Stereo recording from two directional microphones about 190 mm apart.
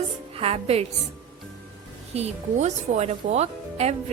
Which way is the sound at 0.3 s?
30° right (ahead or behind).